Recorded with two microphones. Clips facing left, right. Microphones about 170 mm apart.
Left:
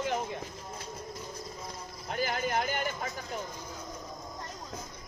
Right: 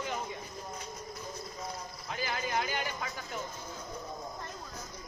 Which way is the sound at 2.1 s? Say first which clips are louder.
Left 4 dB; 50° left (ahead or behind).